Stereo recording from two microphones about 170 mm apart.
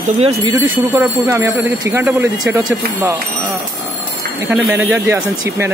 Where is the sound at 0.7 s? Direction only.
15° right (ahead or behind).